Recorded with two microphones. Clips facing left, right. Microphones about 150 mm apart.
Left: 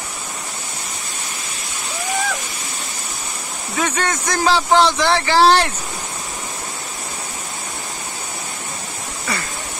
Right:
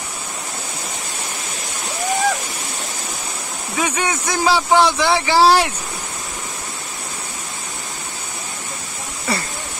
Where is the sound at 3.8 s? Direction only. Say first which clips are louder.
Even; 10° right (ahead or behind).